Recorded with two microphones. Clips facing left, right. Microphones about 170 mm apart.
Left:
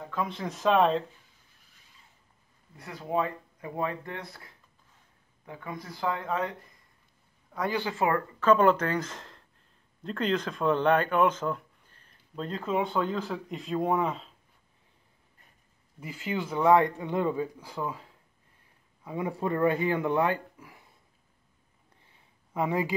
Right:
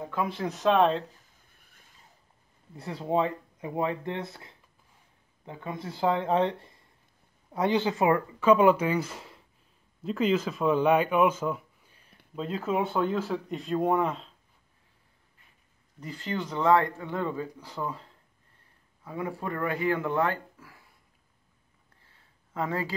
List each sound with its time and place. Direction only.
0.1 s speech: 5° right (ahead or behind)
1.5 s vehicle: 55° right (ahead or behind)
2.7 s a man's voice: 25° right (ahead or behind); by 14.3 s centre (ahead or behind)
16.0 s speech: 10° left (ahead or behind)
19.0 s speech: 20° left (ahead or behind)
22.0 s a sound: 20° left (ahead or behind)